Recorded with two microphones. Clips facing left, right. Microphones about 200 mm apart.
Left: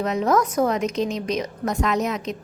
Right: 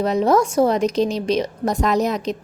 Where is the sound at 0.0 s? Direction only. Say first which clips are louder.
Right 4 dB; 30° right (ahead or behind).